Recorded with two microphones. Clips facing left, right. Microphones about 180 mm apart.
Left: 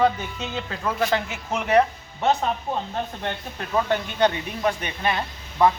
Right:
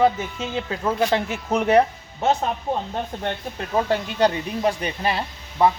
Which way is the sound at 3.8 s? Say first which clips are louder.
Right 1 dB; 30° right (ahead or behind).